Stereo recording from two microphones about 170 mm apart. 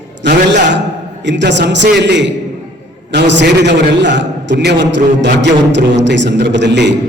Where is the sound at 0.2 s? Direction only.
90° right.